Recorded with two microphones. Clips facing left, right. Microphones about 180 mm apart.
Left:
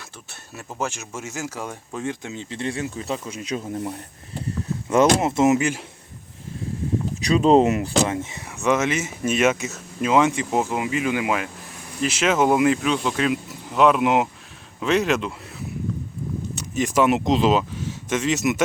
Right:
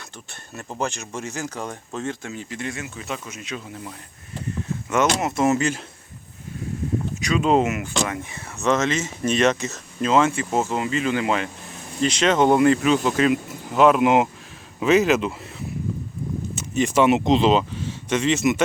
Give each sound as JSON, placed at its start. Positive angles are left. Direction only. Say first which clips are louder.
{"t": 0.3, "sound": "speech", "louder": "right 2 dB", "side_deg": 5}
{"t": 7.2, "sound": "speech", "louder": "left 4 dB", "side_deg": 35}
{"t": 16.6, "sound": "speech", "louder": "right 1 dB", "side_deg": 0}